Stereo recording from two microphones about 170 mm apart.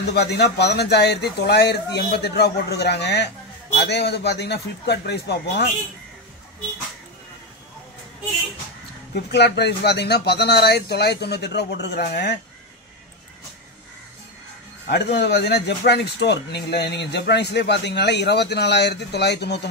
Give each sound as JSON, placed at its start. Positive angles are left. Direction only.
{"t": 0.1, "sound": "speech", "side_deg": 75}
{"t": 9.1, "sound": "speech", "side_deg": 80}
{"t": 14.9, "sound": "speech", "side_deg": 80}